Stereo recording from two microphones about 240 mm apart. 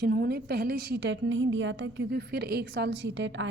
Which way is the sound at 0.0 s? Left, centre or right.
Right.